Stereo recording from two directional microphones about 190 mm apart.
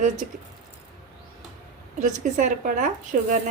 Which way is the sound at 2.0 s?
40° right (ahead or behind).